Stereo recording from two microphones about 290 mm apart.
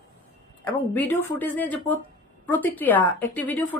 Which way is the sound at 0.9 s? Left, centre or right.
Centre.